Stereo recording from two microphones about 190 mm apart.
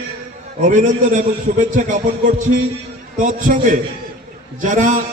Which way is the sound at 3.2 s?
45° right (ahead or behind).